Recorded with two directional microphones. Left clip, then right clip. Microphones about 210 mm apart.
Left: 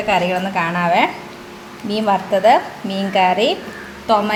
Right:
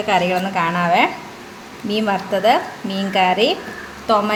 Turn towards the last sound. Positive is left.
turn(degrees=0)  # may be behind; listen again after turning